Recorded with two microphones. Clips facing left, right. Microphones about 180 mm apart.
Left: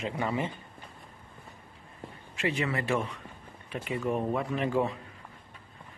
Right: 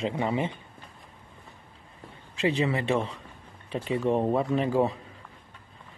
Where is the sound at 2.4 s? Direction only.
30° right (ahead or behind).